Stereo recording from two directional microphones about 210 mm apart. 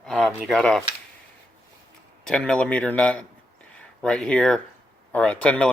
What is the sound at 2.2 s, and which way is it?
Speech, 5° left (ahead or behind).